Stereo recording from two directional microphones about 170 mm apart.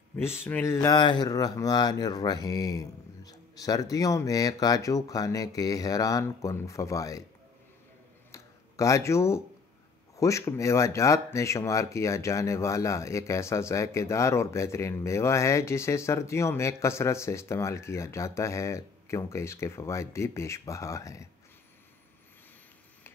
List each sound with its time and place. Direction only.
0.1 s speech: 15° left (ahead or behind)
0.9 s speech: 25° left (ahead or behind)
8.3 s a sound: 20° left (ahead or behind)
10.1 s speech: 20° left (ahead or behind)